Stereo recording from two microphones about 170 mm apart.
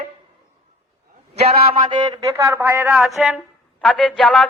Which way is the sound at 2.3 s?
15° right (ahead or behind).